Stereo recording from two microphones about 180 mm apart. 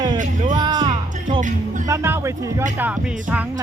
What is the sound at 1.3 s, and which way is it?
Speech, 45° right (ahead or behind).